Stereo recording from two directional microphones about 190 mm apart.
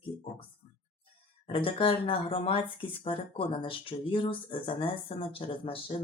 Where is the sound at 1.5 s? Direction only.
25° left (ahead or behind).